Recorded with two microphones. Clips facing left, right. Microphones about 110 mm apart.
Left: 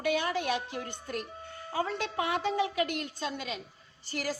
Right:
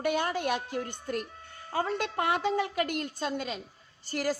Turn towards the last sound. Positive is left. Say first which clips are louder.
# right 4 dB
turn(degrees=-45)  # may be behind; listen again after turning